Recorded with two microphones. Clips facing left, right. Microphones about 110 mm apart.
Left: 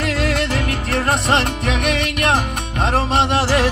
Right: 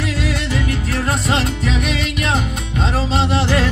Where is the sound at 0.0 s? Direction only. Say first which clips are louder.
Left 2 dB; 70° left (ahead or behind).